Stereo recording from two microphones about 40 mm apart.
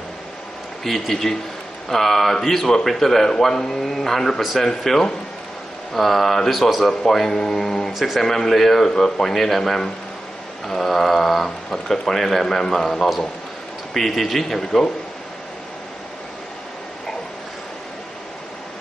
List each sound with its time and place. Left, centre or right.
0.8 s a man's voice: centre
7.9 s speech: centre
8.2 s a man's voice: centre
10.7 s a sound: centre
11.4 s a man's voice: centre